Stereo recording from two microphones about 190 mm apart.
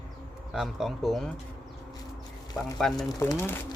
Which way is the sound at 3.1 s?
15° left (ahead or behind).